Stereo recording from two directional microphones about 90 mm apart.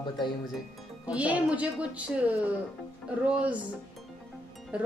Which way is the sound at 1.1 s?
15° right (ahead or behind).